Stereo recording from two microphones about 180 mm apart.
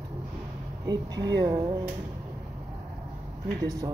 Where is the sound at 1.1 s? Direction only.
75° right (ahead or behind).